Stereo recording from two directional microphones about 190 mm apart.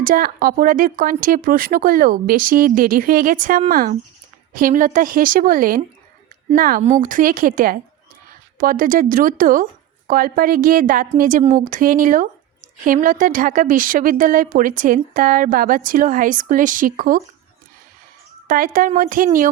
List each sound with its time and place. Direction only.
0.0 s a woman's voice: 50° right (ahead or behind)
18.4 s a woman's voice: 45° right (ahead or behind)